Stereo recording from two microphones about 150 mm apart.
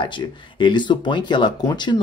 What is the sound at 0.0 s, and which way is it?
Speech, 30° left (ahead or behind).